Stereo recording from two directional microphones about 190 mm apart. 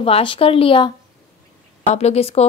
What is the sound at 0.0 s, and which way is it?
Speech, 25° left (ahead or behind).